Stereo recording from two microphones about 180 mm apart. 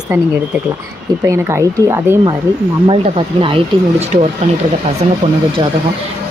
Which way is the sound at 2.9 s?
30° right (ahead or behind).